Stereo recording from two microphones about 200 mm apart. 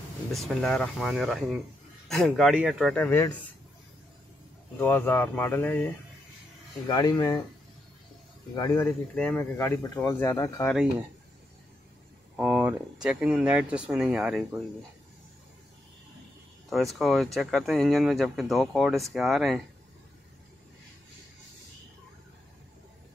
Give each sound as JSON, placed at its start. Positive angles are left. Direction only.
{"t": 0.3, "sound": "speech", "side_deg": 0}
{"t": 4.7, "sound": "speech", "side_deg": 10}
{"t": 6.9, "sound": "speech", "side_deg": 20}
{"t": 8.5, "sound": "speech", "side_deg": 15}
{"t": 10.7, "sound": "speech", "side_deg": -5}
{"t": 12.4, "sound": "speech", "side_deg": -10}
{"t": 16.7, "sound": "speech", "side_deg": 0}